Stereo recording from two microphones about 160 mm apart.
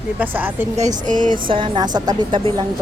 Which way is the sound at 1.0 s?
55° right (ahead or behind).